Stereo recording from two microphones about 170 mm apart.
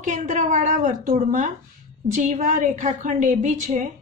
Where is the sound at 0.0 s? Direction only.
45° right (ahead or behind).